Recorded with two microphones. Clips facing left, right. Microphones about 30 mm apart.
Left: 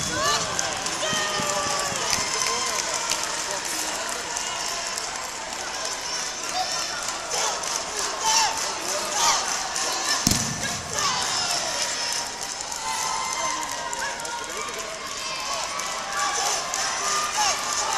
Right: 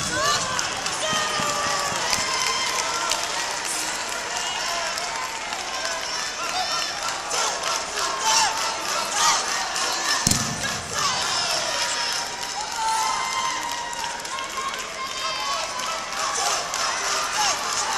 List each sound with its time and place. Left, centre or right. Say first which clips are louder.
0.1 s run: right 1 dB; centre
8.2 s a sound: right 1 dB; centre
10.0 s thump: even; centre
11.0 s crowd: right 1 dB; centre
16.4 s a sound: right 2 dB; right
17.2 s run: right 1 dB; centre